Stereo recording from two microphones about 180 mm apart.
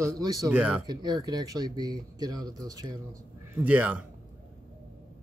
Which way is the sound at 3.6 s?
10° right (ahead or behind).